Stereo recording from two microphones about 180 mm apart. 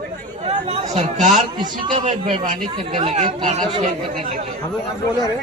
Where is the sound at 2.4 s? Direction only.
45° right (ahead or behind).